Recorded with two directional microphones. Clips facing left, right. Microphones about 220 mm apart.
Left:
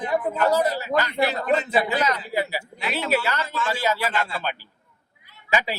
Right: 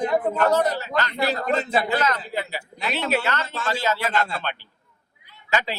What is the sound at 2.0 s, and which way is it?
Speech, 15° left (ahead or behind).